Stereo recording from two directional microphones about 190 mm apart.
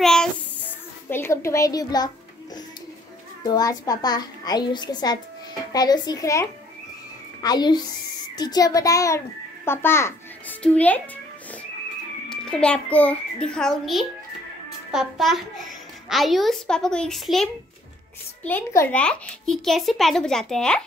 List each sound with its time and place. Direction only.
0.0 s child singing: 5° left (ahead or behind); by 2.0 s 20° left (ahead or behind)
3.4 s a child's voice: 20° left (ahead or behind)
12.3 s a child's voice: 5° left (ahead or behind)